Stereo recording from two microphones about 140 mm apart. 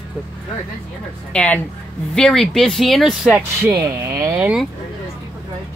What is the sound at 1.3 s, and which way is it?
Speech, 10° left (ahead or behind).